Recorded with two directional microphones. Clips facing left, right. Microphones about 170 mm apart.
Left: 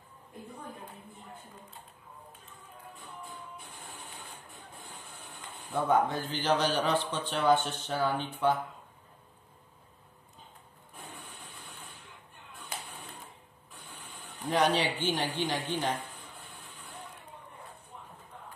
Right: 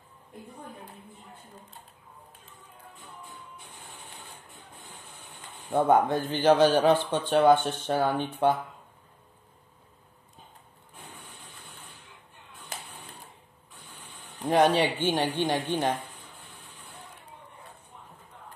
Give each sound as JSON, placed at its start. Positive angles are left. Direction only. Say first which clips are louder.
{"t": 5.7, "sound": "speech", "louder": "right 5 dB", "side_deg": -50}
{"t": 14.5, "sound": "speech", "louder": "right 5 dB", "side_deg": -50}